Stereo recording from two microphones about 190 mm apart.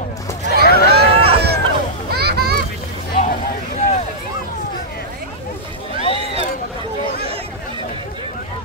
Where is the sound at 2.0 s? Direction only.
55° right (ahead or behind).